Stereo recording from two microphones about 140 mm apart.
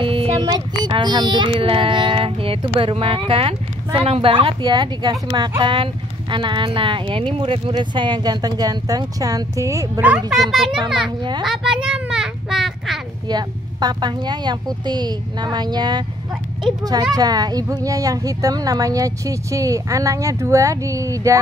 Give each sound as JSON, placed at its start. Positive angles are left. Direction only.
{"t": 0.0, "sound": "speech", "side_deg": -40}
{"t": 10.0, "sound": "a child's voice", "side_deg": -5}
{"t": 11.4, "sound": "a sound", "side_deg": -5}
{"t": 13.3, "sound": "speech", "side_deg": -30}
{"t": 17.1, "sound": "speech", "side_deg": -30}